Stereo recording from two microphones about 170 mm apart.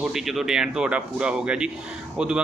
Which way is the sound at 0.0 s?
Centre (ahead or behind).